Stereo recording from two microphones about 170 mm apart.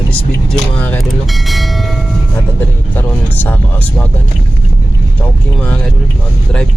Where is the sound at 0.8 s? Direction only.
10° left (ahead or behind).